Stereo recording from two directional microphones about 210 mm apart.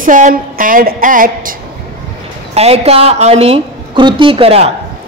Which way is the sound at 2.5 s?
30° right (ahead or behind).